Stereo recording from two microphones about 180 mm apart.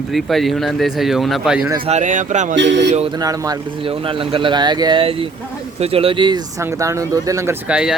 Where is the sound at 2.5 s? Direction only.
80° right.